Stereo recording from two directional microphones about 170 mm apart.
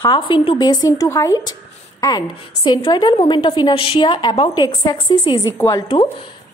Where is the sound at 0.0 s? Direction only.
25° left (ahead or behind).